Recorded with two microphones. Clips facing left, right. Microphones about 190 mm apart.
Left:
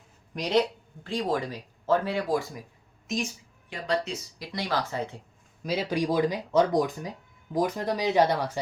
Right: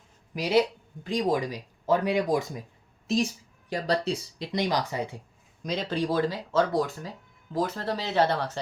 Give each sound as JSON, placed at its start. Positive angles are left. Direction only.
{"t": 0.3, "sound": "speech", "side_deg": -5}
{"t": 3.1, "sound": "speech", "side_deg": -35}
{"t": 4.5, "sound": "speech", "side_deg": -15}
{"t": 5.6, "sound": "speech", "side_deg": 10}